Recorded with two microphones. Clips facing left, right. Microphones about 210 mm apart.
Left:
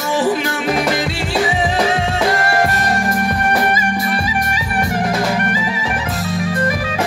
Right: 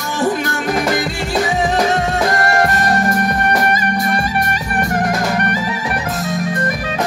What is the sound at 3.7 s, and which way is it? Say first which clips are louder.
Music: right 1 dB; 45° right (ahead or behind).